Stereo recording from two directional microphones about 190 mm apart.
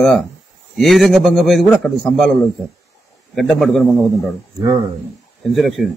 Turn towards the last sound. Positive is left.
turn(degrees=0)  # may be behind; listen again after turning